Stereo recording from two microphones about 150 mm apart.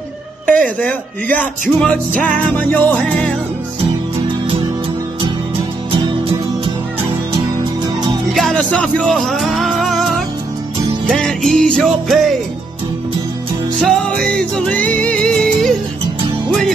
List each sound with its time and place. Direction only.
0.5 s speech: 10° left (ahead or behind)
5.9 s music: 30° right (ahead or behind)
8.4 s music: 5° left (ahead or behind)
13.7 s music: 5° left (ahead or behind)